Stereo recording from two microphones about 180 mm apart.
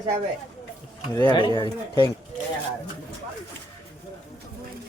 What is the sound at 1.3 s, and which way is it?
Speech, 25° left (ahead or behind).